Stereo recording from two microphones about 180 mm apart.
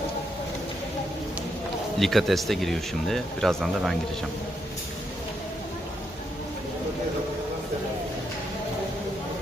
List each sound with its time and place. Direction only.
2.0 s speech: centre (ahead or behind)